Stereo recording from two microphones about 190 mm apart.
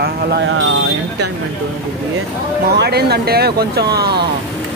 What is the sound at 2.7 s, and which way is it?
Speech, 60° right (ahead or behind).